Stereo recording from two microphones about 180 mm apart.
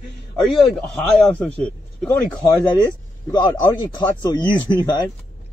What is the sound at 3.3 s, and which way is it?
A man's voice, 20° left (ahead or behind).